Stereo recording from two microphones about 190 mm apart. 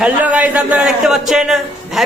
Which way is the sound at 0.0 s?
5° right (ahead or behind).